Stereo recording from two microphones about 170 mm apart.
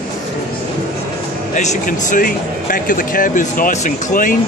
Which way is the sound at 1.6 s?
45° left (ahead or behind).